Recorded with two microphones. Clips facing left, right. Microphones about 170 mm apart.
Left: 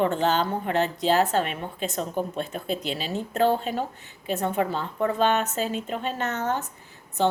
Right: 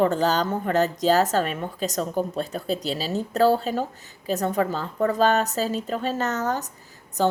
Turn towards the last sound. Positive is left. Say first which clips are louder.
# right 1 dB
turn(degrees=-40)  # may be behind; listen again after turning